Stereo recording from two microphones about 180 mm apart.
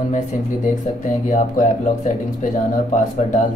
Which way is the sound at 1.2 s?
45° left (ahead or behind).